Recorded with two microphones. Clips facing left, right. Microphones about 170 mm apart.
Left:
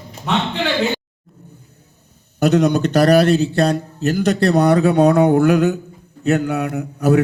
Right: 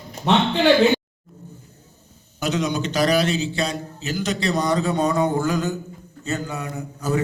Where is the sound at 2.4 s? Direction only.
60° left (ahead or behind).